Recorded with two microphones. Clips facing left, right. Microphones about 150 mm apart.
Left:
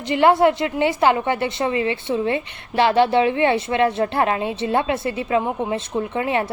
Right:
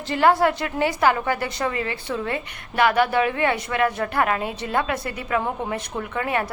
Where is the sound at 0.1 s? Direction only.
20° left (ahead or behind).